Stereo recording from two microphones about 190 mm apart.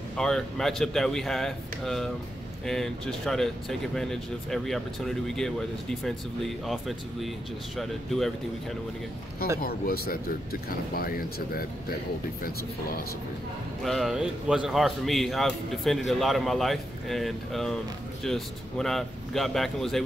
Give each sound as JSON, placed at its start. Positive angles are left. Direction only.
{"t": 0.2, "sound": "speech", "side_deg": 0}
{"t": 9.6, "sound": "speech", "side_deg": 50}
{"t": 13.8, "sound": "speech", "side_deg": 0}